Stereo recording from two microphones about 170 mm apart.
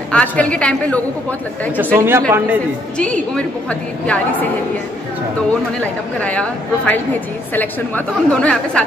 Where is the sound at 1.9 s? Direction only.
15° right (ahead or behind).